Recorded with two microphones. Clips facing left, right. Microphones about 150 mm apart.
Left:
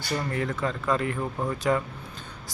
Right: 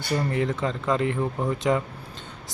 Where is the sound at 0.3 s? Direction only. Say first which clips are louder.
Right 3 dB; 25° right (ahead or behind).